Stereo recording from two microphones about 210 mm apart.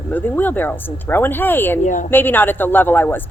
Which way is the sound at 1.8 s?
35° left (ahead or behind).